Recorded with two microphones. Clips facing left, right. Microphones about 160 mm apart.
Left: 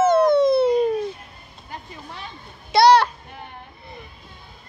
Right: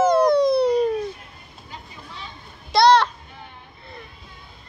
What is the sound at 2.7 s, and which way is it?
Children playing, 5° left (ahead or behind).